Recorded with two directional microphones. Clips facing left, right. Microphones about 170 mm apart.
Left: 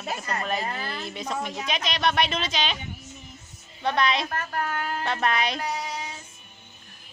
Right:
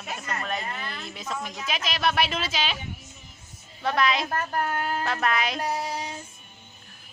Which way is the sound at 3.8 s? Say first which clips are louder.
Even; centre (ahead or behind).